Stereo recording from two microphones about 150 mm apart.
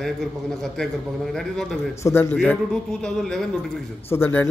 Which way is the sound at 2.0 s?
15° left (ahead or behind).